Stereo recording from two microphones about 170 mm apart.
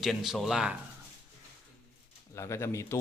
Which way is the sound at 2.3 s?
15° left (ahead or behind).